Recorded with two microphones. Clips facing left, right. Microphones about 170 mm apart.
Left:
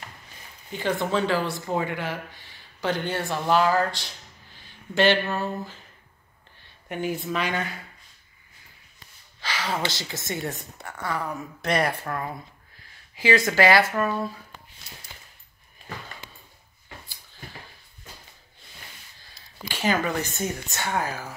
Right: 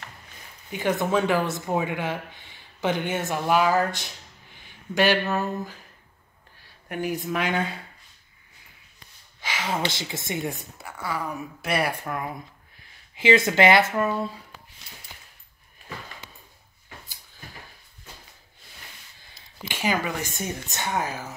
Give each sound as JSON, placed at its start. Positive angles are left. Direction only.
{"t": 0.7, "sound": "a woman's voice", "side_deg": -15}
{"t": 6.9, "sound": "a woman's voice", "side_deg": -15}
{"t": 9.7, "sound": "a woman's voice", "side_deg": -20}
{"t": 19.6, "sound": "a woman's voice", "side_deg": -15}